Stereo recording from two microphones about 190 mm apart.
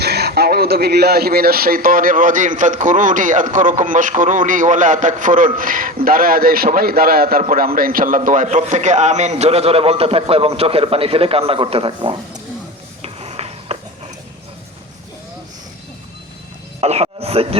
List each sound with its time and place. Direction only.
0.0 s a man's voice: 60° right (ahead or behind); by 12.4 s 25° right (ahead or behind)
13.0 s a sound: 30° right (ahead or behind)
16.8 s speech: 35° right (ahead or behind)